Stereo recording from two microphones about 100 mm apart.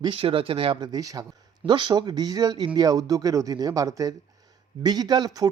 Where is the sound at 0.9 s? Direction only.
40° right (ahead or behind).